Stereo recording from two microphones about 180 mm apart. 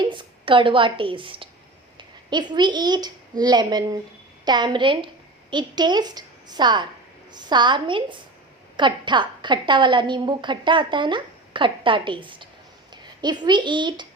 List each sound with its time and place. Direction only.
0.0 s a woman's voice: 25° right (ahead or behind)